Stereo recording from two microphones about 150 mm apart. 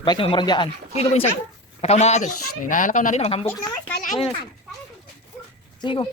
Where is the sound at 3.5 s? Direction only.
10° left (ahead or behind).